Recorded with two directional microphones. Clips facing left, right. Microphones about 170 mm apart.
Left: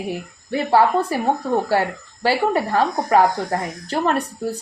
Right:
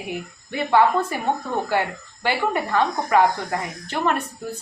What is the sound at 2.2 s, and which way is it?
Speech, 35° left (ahead or behind).